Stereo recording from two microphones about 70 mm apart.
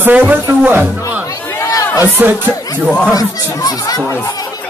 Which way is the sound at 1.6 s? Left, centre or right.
Left.